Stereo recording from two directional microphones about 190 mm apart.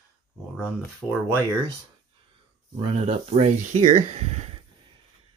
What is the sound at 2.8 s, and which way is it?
Speech, 30° right (ahead or behind).